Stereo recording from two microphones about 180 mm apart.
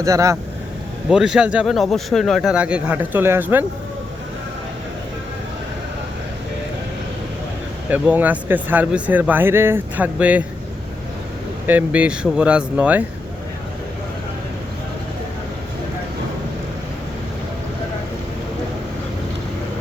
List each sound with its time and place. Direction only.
0.0 s speech: 15° right (ahead or behind)
1.1 s speech: 5° right (ahead or behind)
7.9 s speech: 10° right (ahead or behind)
11.6 s speech: 10° right (ahead or behind)